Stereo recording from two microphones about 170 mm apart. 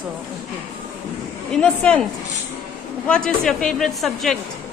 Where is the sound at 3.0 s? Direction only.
5° left (ahead or behind).